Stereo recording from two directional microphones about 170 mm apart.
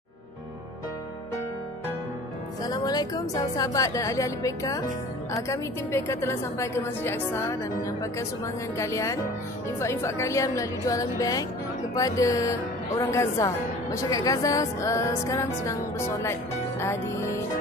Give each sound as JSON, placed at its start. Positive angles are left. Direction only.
{"t": 2.6, "sound": "a woman's voice", "side_deg": 25}